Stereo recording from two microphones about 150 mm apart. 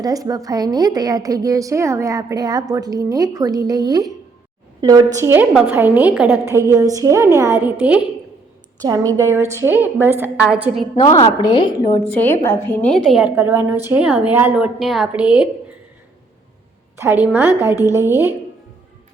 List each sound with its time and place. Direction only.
0.0 s a woman's voice: 25° right (ahead or behind)
8.8 s a woman's voice: 25° right (ahead or behind); by 10.8 s 5° right (ahead or behind)
11.0 s a woman's voice: 30° left (ahead or behind)
12.1 s a woman's voice: 15° left (ahead or behind); by 13.3 s centre (ahead or behind)
13.3 s a woman's voice: 15° right (ahead or behind)
17.0 s a woman's voice: 10° right (ahead or behind)